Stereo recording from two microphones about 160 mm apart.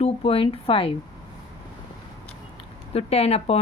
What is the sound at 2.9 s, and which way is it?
Speech, 40° left (ahead or behind).